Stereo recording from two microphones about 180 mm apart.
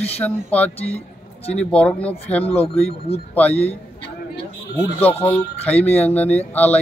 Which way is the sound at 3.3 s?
10° left (ahead or behind).